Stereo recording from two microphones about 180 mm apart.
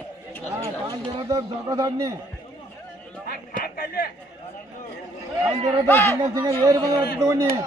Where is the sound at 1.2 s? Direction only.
20° right (ahead or behind).